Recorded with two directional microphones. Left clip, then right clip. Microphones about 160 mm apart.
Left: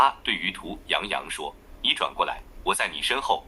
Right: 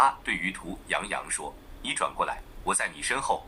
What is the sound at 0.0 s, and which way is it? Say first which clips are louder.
A man's voice: left 2 dB; 30° left (ahead or behind).